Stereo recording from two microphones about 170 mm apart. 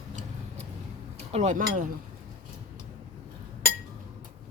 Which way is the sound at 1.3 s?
45° right (ahead or behind).